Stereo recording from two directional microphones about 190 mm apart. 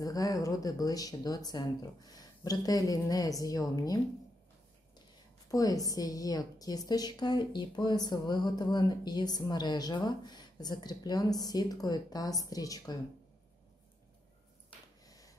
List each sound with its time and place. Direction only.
0.0 s a woman's voice: 20° left (ahead or behind)
5.5 s a woman's voice: 20° left (ahead or behind)
15.0 s snort: 20° left (ahead or behind)